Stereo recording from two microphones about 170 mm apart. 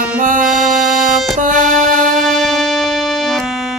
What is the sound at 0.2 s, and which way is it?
Music, 50° right (ahead or behind).